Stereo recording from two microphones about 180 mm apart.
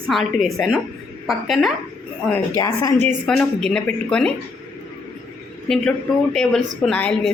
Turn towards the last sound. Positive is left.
turn(degrees=5)  # may be behind; listen again after turning